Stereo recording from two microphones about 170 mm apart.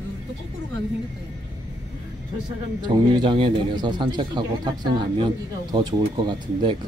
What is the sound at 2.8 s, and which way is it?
Speech, 25° right (ahead or behind).